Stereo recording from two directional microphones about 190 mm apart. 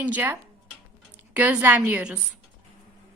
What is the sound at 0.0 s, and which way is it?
A woman's voice, 10° right (ahead or behind).